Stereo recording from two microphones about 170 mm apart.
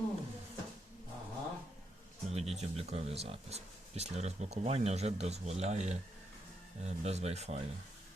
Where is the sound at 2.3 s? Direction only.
40° right (ahead or behind).